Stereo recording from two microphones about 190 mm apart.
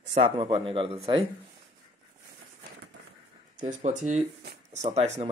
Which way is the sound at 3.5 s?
40° right (ahead or behind).